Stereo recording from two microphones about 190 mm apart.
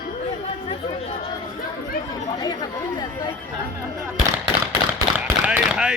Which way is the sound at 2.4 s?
20° left (ahead or behind).